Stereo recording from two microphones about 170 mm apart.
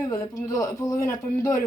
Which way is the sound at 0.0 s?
20° left (ahead or behind).